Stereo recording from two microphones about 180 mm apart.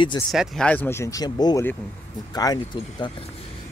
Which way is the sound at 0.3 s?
Centre (ahead or behind).